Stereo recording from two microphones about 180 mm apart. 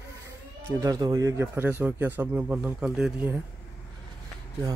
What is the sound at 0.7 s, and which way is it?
A man's voice, 20° right (ahead or behind).